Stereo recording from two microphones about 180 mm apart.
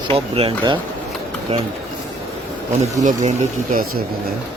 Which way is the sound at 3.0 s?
45° right (ahead or behind).